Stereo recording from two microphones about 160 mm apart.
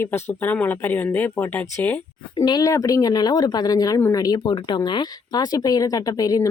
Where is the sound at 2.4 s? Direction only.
25° left (ahead or behind).